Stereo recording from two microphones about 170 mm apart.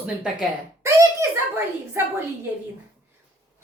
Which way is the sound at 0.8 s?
15° right (ahead or behind).